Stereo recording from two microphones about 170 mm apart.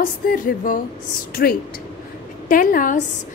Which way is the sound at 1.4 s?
75° left (ahead or behind).